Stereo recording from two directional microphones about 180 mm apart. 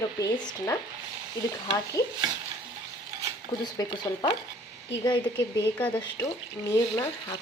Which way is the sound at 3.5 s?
25° left (ahead or behind).